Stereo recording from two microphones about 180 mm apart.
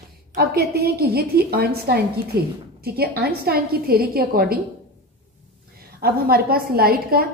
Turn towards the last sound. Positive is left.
turn(degrees=-55)  # may be behind; listen again after turning